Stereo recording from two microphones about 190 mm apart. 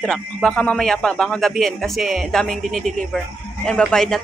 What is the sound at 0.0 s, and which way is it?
A woman's voice, 5° left (ahead or behind).